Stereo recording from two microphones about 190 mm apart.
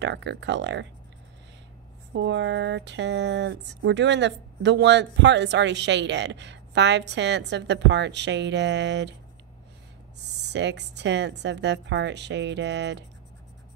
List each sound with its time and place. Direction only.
0.0 s speech: 70° right (ahead or behind)
2.1 s speech: 70° right (ahead or behind)
10.1 s speech: 65° right (ahead or behind)